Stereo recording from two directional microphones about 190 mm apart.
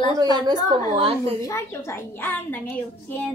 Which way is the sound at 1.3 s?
15° left (ahead or behind).